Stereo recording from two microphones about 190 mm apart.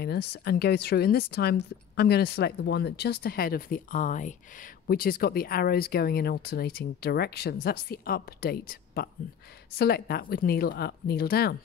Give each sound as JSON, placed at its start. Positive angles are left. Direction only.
{"t": 0.0, "sound": "a woman's voice", "side_deg": 60}